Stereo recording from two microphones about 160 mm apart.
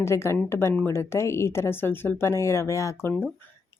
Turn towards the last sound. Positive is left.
turn(degrees=15)  # may be behind; listen again after turning